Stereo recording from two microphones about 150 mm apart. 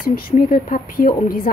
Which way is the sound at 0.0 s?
70° left (ahead or behind).